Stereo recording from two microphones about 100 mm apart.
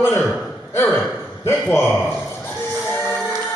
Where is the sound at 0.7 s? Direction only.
20° left (ahead or behind).